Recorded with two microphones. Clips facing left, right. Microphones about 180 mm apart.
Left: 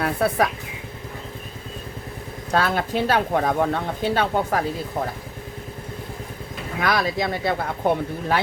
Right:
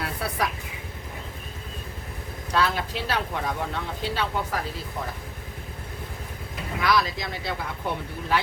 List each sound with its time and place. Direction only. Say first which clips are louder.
0.0 s speech: left 9 dB; 50° left (ahead or behind)
2.5 s speech: left 4 dB; 50° left (ahead or behind)
6.7 s speech: left 2 dB; 55° left (ahead or behind)